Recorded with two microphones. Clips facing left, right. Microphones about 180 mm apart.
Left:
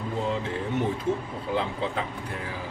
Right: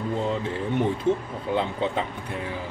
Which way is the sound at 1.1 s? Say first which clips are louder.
Right 6 dB; 25° right (ahead or behind).